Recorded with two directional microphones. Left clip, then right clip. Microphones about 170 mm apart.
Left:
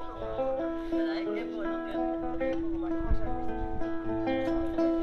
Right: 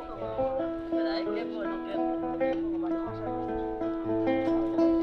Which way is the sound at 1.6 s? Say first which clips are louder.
Even; 45° left (ahead or behind).